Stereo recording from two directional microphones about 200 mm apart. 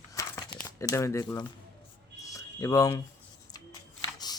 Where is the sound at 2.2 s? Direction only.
15° left (ahead or behind).